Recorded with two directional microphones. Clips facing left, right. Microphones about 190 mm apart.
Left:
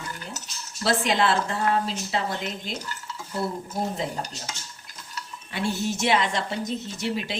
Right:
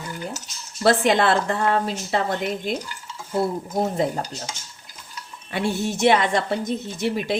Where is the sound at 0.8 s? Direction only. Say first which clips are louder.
Right 5 dB; 55° right (ahead or behind).